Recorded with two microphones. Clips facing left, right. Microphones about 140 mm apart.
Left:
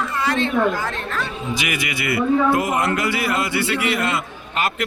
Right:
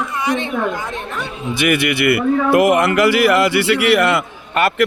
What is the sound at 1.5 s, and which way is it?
Speech, 60° right (ahead or behind).